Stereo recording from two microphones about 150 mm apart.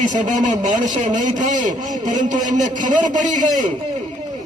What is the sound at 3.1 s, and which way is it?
Speech, 60° right (ahead or behind).